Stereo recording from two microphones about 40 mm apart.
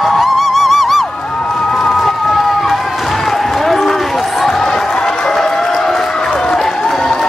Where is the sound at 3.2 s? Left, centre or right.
Centre.